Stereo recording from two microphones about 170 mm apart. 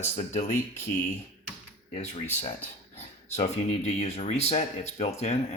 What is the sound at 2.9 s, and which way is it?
Speech, 40° left (ahead or behind).